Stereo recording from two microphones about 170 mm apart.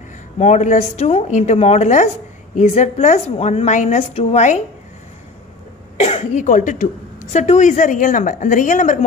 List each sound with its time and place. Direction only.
0.4 s a woman's voice: 45° left (ahead or behind)
5.9 s a woman's voice: 40° left (ahead or behind)